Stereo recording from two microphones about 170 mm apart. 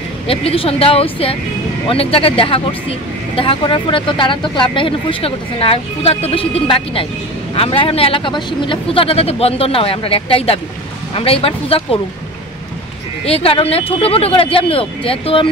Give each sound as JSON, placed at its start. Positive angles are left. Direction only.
{"t": 0.3, "sound": "speech", "side_deg": 35}
{"t": 13.2, "sound": "speech", "side_deg": 35}